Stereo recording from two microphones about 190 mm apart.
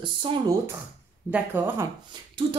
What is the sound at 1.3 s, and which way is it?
Speech, 10° right (ahead or behind).